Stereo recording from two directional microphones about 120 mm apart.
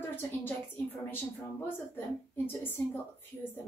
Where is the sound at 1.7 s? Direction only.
20° left (ahead or behind).